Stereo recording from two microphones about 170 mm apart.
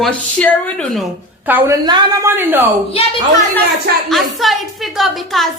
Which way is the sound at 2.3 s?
15° right (ahead or behind).